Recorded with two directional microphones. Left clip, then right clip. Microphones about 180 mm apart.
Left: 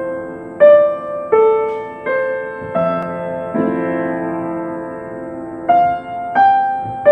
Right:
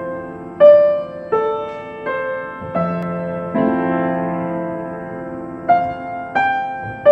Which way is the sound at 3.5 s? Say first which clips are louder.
Right 1 dB; 35° right (ahead or behind).